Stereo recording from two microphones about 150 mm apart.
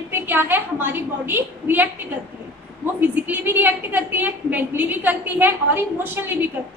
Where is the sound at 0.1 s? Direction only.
15° right (ahead or behind).